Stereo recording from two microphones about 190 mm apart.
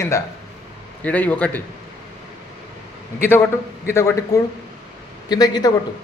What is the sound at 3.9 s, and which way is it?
A man's voice, 15° left (ahead or behind).